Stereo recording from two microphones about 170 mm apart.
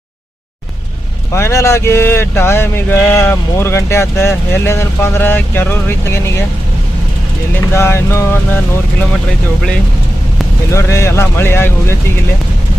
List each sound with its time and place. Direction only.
1.3 s speech: 15° left (ahead or behind)
7.7 s speech: 15° left (ahead or behind)
10.7 s speech: 15° left (ahead or behind)